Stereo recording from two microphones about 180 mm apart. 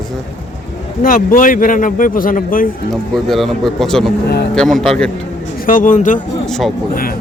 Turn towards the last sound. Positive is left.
turn(degrees=0)  # may be behind; listen again after turning